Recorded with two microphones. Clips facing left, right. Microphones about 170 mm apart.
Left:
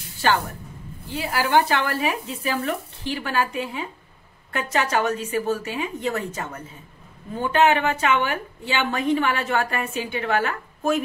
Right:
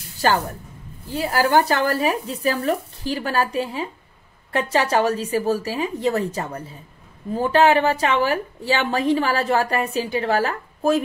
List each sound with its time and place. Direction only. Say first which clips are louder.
1.1 s a woman's voice: right 3 dB; 40° right (ahead or behind)